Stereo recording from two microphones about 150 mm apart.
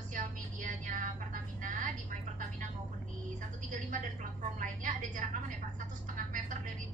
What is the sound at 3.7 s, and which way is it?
Vehicle, 55° right (ahead or behind).